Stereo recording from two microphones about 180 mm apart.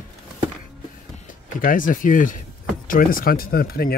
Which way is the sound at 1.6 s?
50° left (ahead or behind).